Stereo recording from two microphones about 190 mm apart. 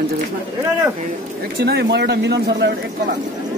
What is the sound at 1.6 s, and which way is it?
A man's voice, 60° right (ahead or behind).